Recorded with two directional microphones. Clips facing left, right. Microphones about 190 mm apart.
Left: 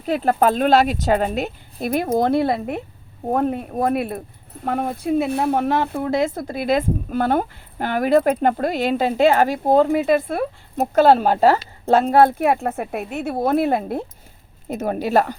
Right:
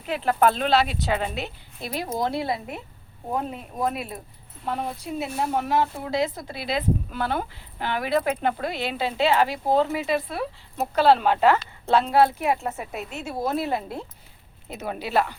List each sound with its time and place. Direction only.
0.0 s speech: 40° left (ahead or behind)